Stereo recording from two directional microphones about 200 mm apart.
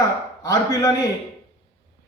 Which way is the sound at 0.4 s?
15° left (ahead or behind).